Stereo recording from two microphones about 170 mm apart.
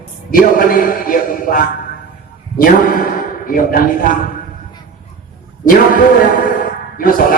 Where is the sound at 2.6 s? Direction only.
55° left (ahead or behind).